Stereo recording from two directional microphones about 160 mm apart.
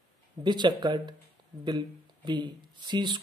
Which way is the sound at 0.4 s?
30° right (ahead or behind).